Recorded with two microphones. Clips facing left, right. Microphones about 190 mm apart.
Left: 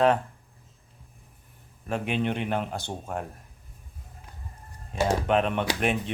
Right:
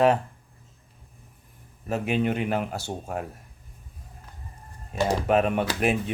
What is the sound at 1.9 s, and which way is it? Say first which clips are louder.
Speech: right 3 dB; 5° right (ahead or behind).